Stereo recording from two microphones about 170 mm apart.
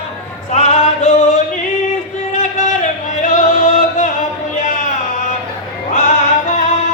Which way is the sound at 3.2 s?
50° left (ahead or behind).